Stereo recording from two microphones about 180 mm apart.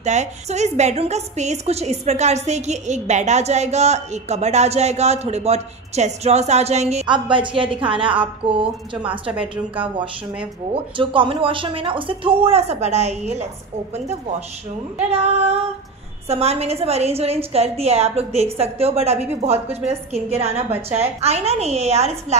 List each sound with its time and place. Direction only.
0.0 s a woman's voice: 40° right (ahead or behind)
7.1 s a woman's voice: 25° right (ahead or behind)
10.7 s a woman's voice: 30° right (ahead or behind)